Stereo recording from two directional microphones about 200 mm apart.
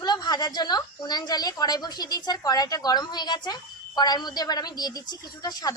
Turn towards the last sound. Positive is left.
turn(degrees=20)  # may be behind; listen again after turning